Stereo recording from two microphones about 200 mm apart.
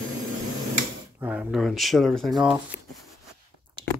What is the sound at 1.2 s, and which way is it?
Speech, 5° right (ahead or behind).